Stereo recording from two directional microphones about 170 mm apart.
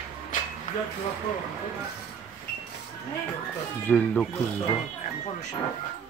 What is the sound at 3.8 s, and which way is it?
Speech, 10° left (ahead or behind).